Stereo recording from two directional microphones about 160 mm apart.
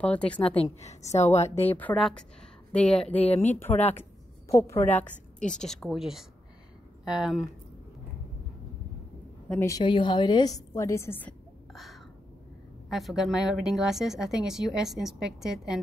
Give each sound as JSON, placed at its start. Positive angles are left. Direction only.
{"t": 0.0, "sound": "a woman's voice", "side_deg": 10}
{"t": 0.4, "sound": "a woman's voice", "side_deg": 35}
{"t": 1.7, "sound": "a woman's voice", "side_deg": 10}
{"t": 5.4, "sound": "speech", "side_deg": 5}
{"t": 9.6, "sound": "a woman's voice", "side_deg": 20}
{"t": 10.7, "sound": "a woman's voice", "side_deg": 20}
{"t": 11.7, "sound": "a sound", "side_deg": 0}
{"t": 12.9, "sound": "speech", "side_deg": 0}